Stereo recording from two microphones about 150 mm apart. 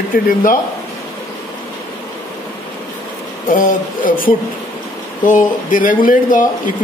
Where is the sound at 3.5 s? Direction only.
60° left (ahead or behind).